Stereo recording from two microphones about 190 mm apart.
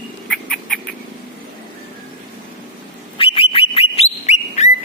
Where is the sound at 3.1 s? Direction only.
30° left (ahead or behind).